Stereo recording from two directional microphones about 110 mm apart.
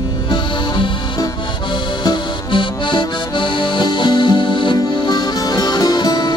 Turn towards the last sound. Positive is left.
turn(degrees=40)  # may be behind; listen again after turning